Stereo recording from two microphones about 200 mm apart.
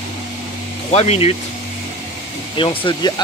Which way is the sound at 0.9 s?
30° left (ahead or behind).